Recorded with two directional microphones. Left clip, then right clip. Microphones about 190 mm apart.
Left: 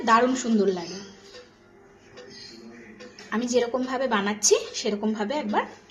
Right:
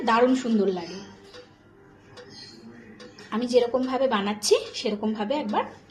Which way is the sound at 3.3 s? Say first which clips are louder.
Right 2 dB; centre (ahead or behind).